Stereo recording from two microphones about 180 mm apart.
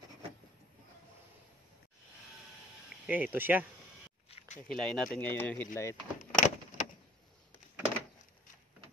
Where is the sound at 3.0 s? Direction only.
10° right (ahead or behind).